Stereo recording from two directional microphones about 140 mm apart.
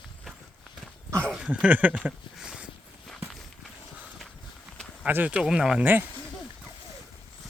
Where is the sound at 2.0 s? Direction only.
5° right (ahead or behind).